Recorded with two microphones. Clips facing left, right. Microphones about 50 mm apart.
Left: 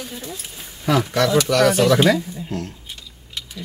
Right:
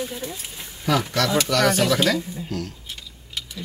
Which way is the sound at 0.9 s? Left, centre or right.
Centre.